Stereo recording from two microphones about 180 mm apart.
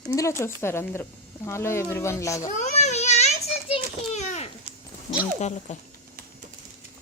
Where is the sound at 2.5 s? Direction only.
40° left (ahead or behind).